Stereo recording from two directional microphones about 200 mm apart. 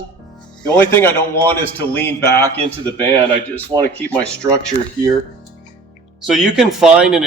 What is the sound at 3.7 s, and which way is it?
Speech, 20° right (ahead or behind).